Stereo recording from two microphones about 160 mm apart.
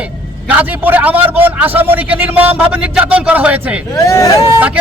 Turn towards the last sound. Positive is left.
turn(degrees=-20)  # may be behind; listen again after turning